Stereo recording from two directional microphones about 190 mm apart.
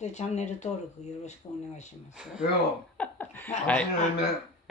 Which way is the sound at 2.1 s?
5° right (ahead or behind).